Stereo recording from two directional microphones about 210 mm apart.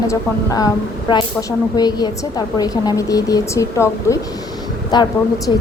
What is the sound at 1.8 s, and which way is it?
A woman's voice, 20° left (ahead or behind).